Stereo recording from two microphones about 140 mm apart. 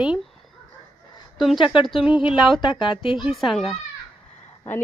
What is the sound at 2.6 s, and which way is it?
Speech, 35° left (ahead or behind).